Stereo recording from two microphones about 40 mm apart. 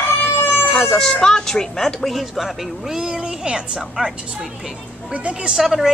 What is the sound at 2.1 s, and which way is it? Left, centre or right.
Speech, centre.